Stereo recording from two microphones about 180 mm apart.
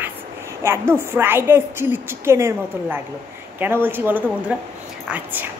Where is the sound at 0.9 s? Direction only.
15° right (ahead or behind).